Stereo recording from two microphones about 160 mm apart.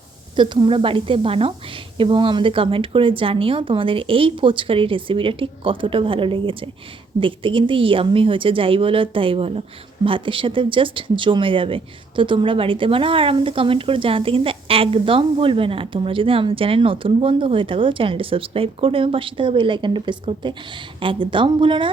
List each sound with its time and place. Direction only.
0.3 s a woman's voice: 30° right (ahead or behind)